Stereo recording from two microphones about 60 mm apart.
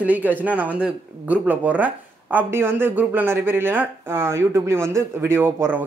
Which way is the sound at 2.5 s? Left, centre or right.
Right.